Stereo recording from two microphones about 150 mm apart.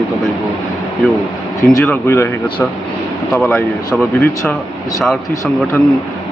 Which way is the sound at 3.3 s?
Centre (ahead or behind).